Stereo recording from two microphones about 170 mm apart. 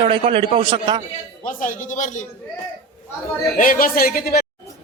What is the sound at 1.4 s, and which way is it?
Speech, 50° left (ahead or behind).